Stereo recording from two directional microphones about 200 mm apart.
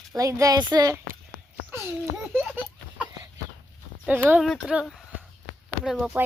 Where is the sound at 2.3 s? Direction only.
5° right (ahead or behind).